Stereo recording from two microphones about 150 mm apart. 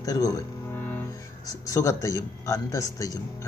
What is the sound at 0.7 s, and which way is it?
Speech, 15° left (ahead or behind).